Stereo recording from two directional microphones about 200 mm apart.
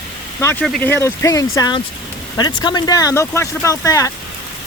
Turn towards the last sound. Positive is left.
turn(degrees=15)  # may be behind; listen again after turning